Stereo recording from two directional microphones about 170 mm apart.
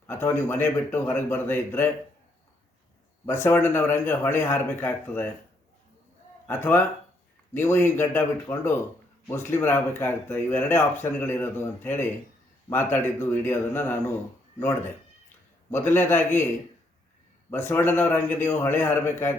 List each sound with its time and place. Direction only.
0.1 s speech: 15° left (ahead or behind)
3.2 s speech: 15° left (ahead or behind)
6.5 s speech: 10° left (ahead or behind)
15.7 s speech: 15° left (ahead or behind)
17.5 s speech: 15° left (ahead or behind)